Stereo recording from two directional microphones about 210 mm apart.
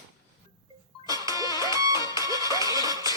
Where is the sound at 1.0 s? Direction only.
15° right (ahead or behind).